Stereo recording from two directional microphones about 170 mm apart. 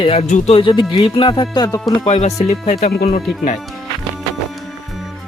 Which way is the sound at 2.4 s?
40° left (ahead or behind).